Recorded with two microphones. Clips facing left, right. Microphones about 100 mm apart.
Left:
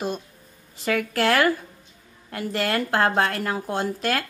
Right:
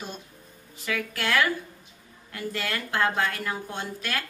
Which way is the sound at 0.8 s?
45° left (ahead or behind).